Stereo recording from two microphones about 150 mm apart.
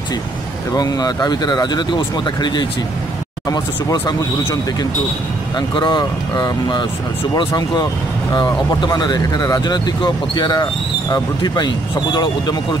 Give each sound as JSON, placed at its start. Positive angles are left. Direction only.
{"t": 0.7, "sound": "speech", "side_deg": 25}
{"t": 5.8, "sound": "speech", "side_deg": 30}